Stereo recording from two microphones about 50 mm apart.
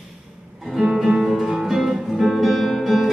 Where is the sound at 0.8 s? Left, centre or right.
Centre.